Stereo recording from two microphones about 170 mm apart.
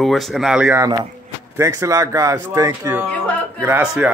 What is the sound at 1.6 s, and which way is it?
Speech, 20° right (ahead or behind).